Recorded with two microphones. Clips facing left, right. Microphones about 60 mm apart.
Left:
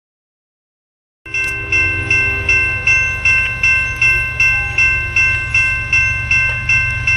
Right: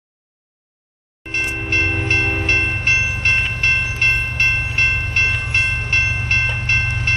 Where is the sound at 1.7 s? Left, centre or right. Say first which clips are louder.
Left 3 dB; left.